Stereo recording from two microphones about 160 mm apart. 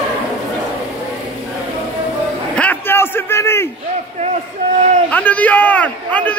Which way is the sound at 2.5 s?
10° left (ahead or behind).